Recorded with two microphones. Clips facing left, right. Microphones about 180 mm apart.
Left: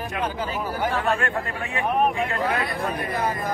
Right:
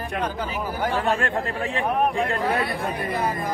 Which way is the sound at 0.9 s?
35° right (ahead or behind).